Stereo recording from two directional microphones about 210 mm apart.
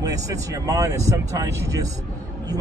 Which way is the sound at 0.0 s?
15° right (ahead or behind).